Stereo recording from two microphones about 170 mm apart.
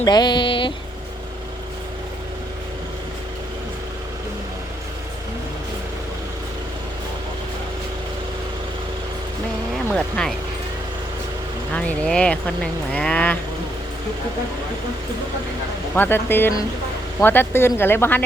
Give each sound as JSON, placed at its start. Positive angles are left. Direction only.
{"t": 0.0, "sound": "a sound", "side_deg": 25}
{"t": 9.9, "sound": "speech", "side_deg": 0}
{"t": 11.7, "sound": "speech", "side_deg": 5}
{"t": 16.0, "sound": "speech", "side_deg": 15}